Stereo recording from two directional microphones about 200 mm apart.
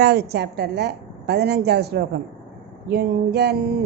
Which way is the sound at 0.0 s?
55° right (ahead or behind).